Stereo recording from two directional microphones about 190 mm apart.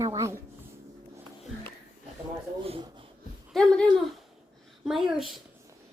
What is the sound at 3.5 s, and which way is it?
Speech, centre (ahead or behind).